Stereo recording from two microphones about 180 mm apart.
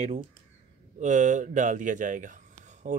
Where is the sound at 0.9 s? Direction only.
40° right (ahead or behind).